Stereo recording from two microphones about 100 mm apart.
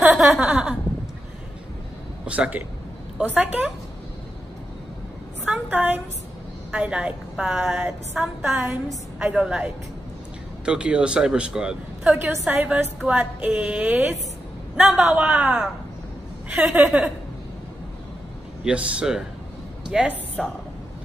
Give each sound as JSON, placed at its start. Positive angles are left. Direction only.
{"t": 0.0, "sound": "a sound", "side_deg": -5}
{"t": 2.2, "sound": "a man's voice", "side_deg": -15}
{"t": 5.5, "sound": "a sound", "side_deg": -15}
{"t": 6.7, "sound": "a woman's voice", "side_deg": -10}
{"t": 18.6, "sound": "a woman's voice", "side_deg": -10}
{"t": 20.4, "sound": "a woman's voice", "side_deg": 5}